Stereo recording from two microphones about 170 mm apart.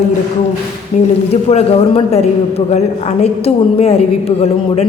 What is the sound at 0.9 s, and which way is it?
A woman's voice, 45° left (ahead or behind).